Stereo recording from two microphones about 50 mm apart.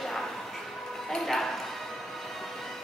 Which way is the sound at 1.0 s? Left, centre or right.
Centre.